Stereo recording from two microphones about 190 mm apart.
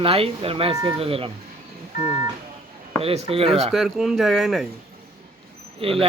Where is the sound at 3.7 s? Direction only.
Centre (ahead or behind).